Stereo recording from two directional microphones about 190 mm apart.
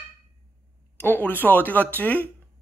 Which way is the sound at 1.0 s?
10° left (ahead or behind).